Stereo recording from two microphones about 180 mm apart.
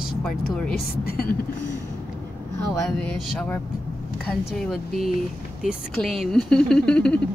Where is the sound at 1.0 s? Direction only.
55° left (ahead or behind).